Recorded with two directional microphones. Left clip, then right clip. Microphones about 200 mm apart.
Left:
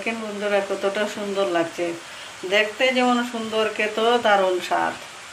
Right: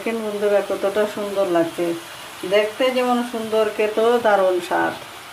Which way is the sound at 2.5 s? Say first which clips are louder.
Right 1 dB; 35° right (ahead or behind).